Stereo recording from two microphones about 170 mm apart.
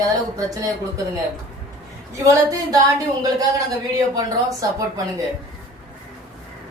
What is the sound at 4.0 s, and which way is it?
Speech, 20° right (ahead or behind).